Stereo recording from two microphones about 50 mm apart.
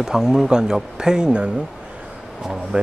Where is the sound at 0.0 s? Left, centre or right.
Centre.